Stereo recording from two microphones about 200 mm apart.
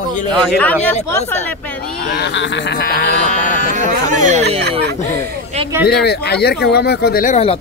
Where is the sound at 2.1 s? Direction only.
60° left (ahead or behind).